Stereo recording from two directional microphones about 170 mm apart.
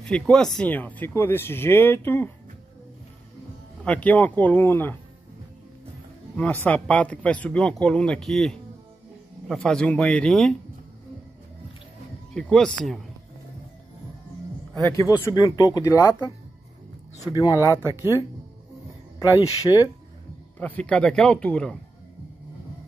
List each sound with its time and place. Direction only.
0.0 s speech: 5° left (ahead or behind)
3.8 s speech: 10° left (ahead or behind)
6.3 s speech: 10° left (ahead or behind)
12.4 s speech: 5° left (ahead or behind)
14.8 s speech: 20° left (ahead or behind)
17.2 s speech: 25° left (ahead or behind)
19.1 s speech: 20° left (ahead or behind)
20.5 s speech: 10° left (ahead or behind)